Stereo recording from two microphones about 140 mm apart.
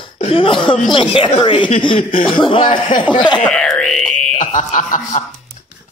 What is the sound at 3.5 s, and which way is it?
Music, 5° left (ahead or behind).